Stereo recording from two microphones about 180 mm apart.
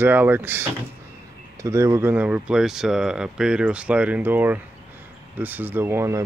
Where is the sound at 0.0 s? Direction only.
10° right (ahead or behind).